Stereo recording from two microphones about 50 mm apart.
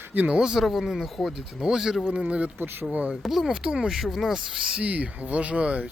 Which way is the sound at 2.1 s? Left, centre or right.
Right.